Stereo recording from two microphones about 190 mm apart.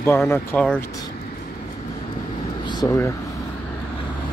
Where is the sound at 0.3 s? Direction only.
10° left (ahead or behind).